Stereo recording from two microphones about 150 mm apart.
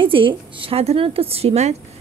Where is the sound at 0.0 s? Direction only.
35° right (ahead or behind).